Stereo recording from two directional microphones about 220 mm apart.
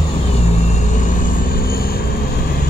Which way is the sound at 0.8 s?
35° left (ahead or behind).